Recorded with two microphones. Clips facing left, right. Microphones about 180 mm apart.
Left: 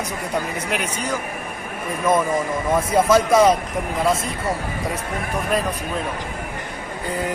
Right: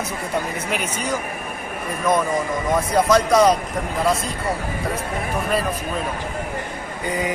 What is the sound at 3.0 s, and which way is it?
A man's voice, 5° left (ahead or behind).